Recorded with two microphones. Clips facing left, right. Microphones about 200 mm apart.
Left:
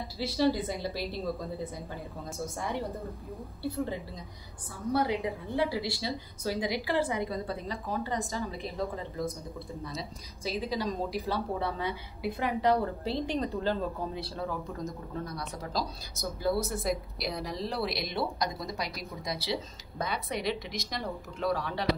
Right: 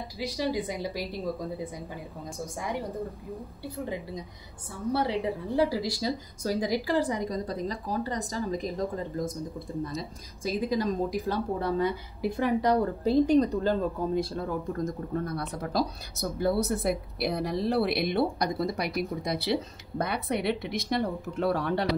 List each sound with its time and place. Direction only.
0.2 s a woman's voice: 15° right (ahead or behind)
4.9 s a woman's voice: 30° right (ahead or behind); by 21.8 s 60° right (ahead or behind)